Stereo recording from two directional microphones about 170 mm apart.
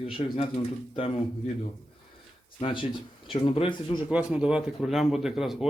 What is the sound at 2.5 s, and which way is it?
Speech, 30° left (ahead or behind).